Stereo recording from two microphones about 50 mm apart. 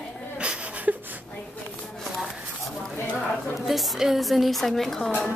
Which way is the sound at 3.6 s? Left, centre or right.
Centre.